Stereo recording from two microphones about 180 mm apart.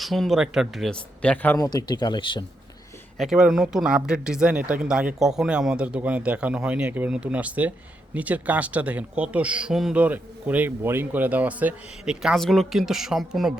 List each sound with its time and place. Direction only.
0.0 s speech: centre (ahead or behind); by 2.4 s 25° left (ahead or behind)
3.2 s speech: centre (ahead or behind)